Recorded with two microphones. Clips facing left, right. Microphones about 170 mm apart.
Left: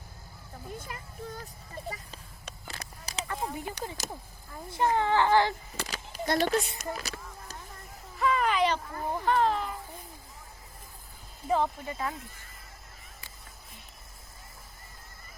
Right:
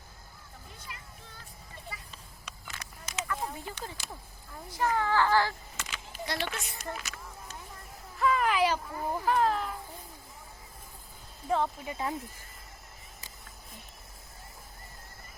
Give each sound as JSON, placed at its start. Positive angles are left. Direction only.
{"t": 0.8, "sound": "a sound", "side_deg": 50}
{"t": 3.4, "sound": "a child's voice", "side_deg": 15}
{"t": 5.7, "sound": "speech", "side_deg": 35}
{"t": 6.9, "sound": "a sound", "side_deg": 35}
{"t": 8.1, "sound": "a child's voice", "side_deg": 0}
{"t": 11.4, "sound": "speech", "side_deg": 0}
{"t": 11.9, "sound": "speech", "side_deg": -20}